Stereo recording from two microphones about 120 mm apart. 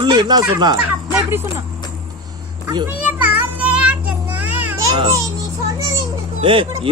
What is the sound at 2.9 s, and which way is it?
Children playing, 15° right (ahead or behind).